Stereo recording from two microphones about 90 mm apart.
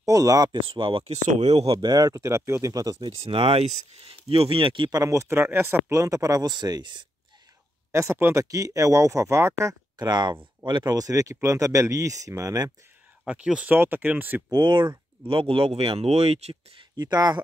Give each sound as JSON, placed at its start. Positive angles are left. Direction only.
{"t": 0.0, "sound": "speech", "side_deg": -40}
{"t": 0.5, "sound": "speech", "side_deg": -70}
{"t": 1.8, "sound": "speech", "side_deg": -45}
{"t": 3.3, "sound": "speech", "side_deg": -90}
{"t": 4.9, "sound": "speech", "side_deg": -35}
{"t": 6.5, "sound": "speech", "side_deg": -55}
{"t": 7.9, "sound": "speech", "side_deg": -30}
{"t": 10.0, "sound": "speech", "side_deg": -55}
{"t": 13.2, "sound": "speech", "side_deg": -10}
{"t": 13.7, "sound": "speech", "side_deg": -20}
{"t": 14.5, "sound": "speech", "side_deg": -60}
{"t": 16.9, "sound": "speech", "side_deg": -50}